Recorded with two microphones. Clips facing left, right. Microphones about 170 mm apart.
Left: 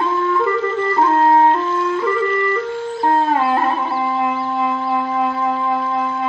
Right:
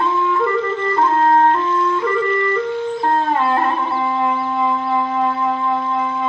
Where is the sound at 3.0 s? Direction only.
10° left (ahead or behind).